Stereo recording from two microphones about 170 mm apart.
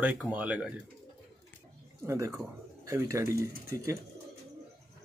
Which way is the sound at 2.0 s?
15° right (ahead or behind).